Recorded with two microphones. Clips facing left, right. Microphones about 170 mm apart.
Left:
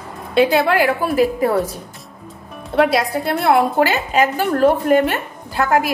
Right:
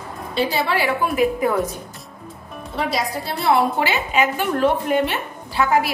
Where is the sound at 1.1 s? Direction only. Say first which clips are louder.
Left 2 dB; 35° left (ahead or behind).